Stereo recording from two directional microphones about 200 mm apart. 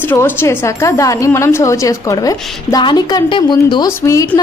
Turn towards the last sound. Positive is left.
turn(degrees=15)  # may be behind; listen again after turning